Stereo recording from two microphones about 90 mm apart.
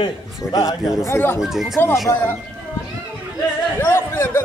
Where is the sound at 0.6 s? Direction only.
45° left (ahead or behind).